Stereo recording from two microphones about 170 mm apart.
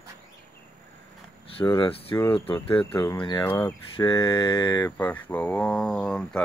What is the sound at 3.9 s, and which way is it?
Speech, 25° left (ahead or behind).